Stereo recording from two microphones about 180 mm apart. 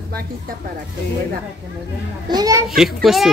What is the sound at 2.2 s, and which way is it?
Speech, 20° right (ahead or behind).